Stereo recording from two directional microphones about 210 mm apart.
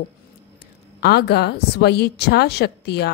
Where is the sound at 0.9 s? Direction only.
50° left (ahead or behind).